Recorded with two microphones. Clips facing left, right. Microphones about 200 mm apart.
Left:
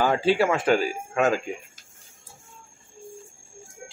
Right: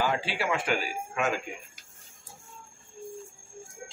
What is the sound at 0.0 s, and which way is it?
Speech, 45° left (ahead or behind).